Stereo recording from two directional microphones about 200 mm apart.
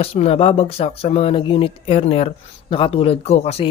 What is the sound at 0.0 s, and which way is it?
Speech, 30° left (ahead or behind).